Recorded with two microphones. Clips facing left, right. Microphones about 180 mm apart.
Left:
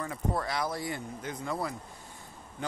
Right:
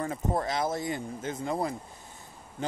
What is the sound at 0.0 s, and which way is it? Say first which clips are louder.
Speech: right 3 dB; 25° right (ahead or behind).